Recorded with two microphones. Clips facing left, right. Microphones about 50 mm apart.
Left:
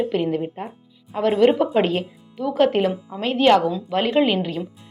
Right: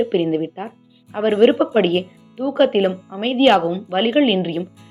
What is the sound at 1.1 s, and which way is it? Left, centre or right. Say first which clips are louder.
Speech: right 2 dB; right.